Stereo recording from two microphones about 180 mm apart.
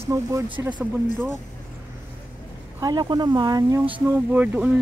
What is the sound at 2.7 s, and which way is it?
Speech, 20° right (ahead or behind).